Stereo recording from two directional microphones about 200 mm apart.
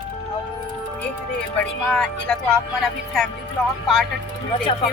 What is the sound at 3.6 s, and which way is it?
Speech, centre (ahead or behind).